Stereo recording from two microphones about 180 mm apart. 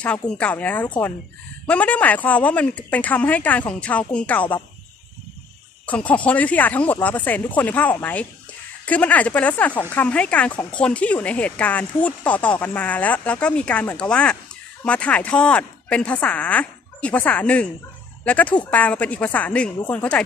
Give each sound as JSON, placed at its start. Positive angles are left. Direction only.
{"t": 0.0, "sound": "speech", "side_deg": 5}
{"t": 5.9, "sound": "speech", "side_deg": 5}